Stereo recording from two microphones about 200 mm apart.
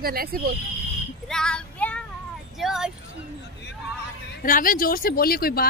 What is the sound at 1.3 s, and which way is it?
Child singing, 5° left (ahead or behind).